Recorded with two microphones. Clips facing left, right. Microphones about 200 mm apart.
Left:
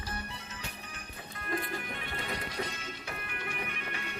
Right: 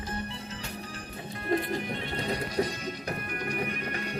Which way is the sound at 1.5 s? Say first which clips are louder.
Right 8 dB; 25° right (ahead or behind).